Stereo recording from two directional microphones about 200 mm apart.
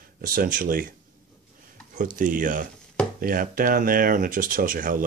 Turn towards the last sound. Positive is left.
turn(degrees=-45)  # may be behind; listen again after turning